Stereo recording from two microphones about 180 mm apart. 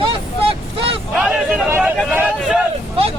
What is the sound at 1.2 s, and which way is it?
Speech, 5° right (ahead or behind).